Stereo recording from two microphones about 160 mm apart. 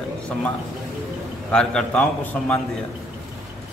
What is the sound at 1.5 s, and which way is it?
A man's voice, 5° left (ahead or behind).